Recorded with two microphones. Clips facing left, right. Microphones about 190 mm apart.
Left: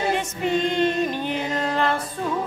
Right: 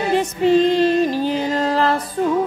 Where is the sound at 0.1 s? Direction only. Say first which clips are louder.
Right 8 dB; 35° right (ahead or behind).